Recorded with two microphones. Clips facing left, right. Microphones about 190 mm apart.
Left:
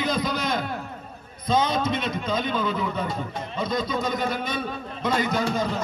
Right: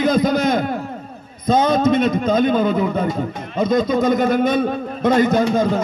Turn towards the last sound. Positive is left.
turn(degrees=-50)  # may be behind; listen again after turning